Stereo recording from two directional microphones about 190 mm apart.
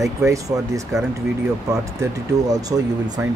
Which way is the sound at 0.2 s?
15° right (ahead or behind).